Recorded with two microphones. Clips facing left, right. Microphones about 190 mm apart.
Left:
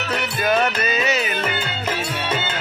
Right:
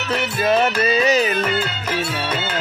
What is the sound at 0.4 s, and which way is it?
Music, 30° right (ahead or behind).